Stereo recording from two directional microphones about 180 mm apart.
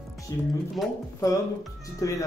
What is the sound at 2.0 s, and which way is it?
Speech, 20° left (ahead or behind).